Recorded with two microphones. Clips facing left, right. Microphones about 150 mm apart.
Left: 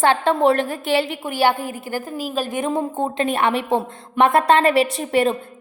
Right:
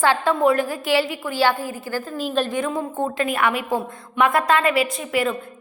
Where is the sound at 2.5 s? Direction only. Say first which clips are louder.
Left 2 dB; 20° left (ahead or behind).